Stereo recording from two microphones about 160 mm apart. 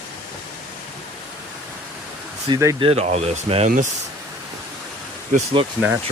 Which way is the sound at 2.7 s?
35° right (ahead or behind).